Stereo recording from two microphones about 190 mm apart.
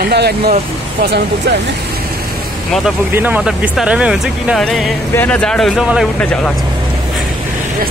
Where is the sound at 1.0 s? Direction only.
60° right (ahead or behind).